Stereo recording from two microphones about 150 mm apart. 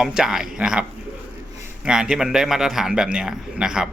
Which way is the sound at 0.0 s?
5° right (ahead or behind).